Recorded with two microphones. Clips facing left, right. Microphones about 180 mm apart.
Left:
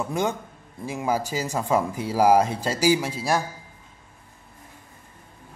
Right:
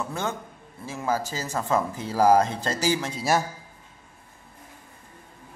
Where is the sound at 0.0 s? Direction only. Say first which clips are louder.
Left 4 dB; 15° left (ahead or behind).